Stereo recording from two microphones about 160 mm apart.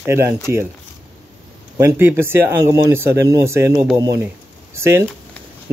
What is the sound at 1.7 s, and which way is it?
Speech, 15° right (ahead or behind).